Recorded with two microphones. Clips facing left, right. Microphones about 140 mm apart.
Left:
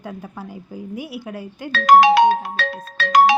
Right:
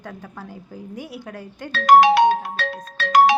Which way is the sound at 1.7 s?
90° left.